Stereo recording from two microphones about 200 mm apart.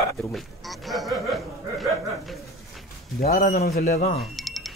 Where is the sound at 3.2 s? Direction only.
50° left (ahead or behind).